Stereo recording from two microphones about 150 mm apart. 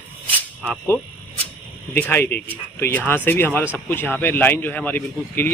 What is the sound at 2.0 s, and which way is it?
Speech, 15° left (ahead or behind).